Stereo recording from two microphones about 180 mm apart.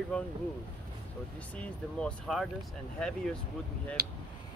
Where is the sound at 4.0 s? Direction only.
60° right (ahead or behind).